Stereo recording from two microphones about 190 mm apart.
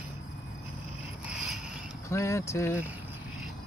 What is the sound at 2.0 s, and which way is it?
Speech, 15° left (ahead or behind).